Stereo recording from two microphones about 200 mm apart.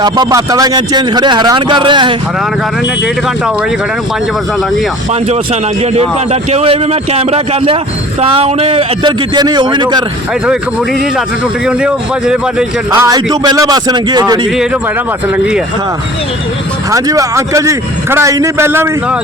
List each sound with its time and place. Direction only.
0.0 s speech: 20° right (ahead or behind)
5.8 s a man's voice: 30° right (ahead or behind)
11.6 s speech: 5° right (ahead or behind)
12.9 s speech: 20° right (ahead or behind)
16.9 s a man's voice: 15° right (ahead or behind)